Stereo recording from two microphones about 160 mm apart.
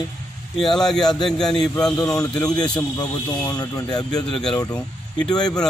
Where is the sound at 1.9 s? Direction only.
20° left (ahead or behind).